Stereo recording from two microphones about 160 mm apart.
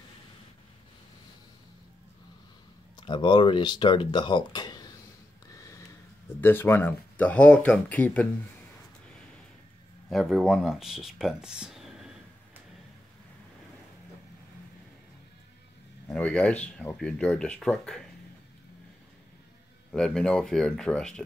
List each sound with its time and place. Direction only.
3.0 s speech: 30° left (ahead or behind)
5.5 s a sound: 20° left (ahead or behind)
6.4 s speech: 15° left (ahead or behind)
10.0 s speech: centre (ahead or behind)
16.1 s speech: 10° left (ahead or behind)
19.9 s speech: 5° left (ahead or behind)